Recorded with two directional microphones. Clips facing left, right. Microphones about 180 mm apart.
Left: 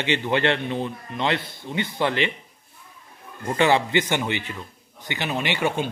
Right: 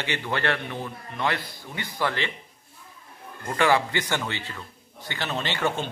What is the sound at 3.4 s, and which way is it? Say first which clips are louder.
A man's voice: left 2 dB; 25° left (ahead or behind).